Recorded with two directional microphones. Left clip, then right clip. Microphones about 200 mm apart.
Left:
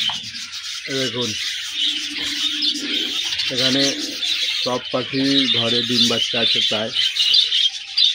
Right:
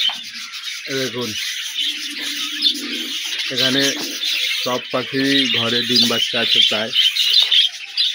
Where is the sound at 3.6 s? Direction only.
Centre (ahead or behind).